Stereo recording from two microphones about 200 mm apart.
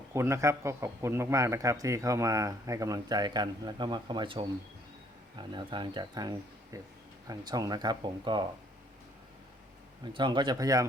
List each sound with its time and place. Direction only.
0.1 s speech: 15° right (ahead or behind)
10.0 s speech: 20° right (ahead or behind)